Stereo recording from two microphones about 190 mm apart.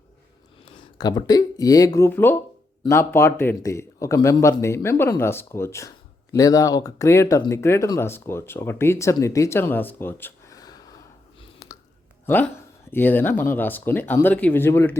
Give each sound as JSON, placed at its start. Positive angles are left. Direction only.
{"t": 0.6, "sound": "speech", "side_deg": 20}
{"t": 11.6, "sound": "a sound", "side_deg": 15}
{"t": 12.2, "sound": "speech", "side_deg": 10}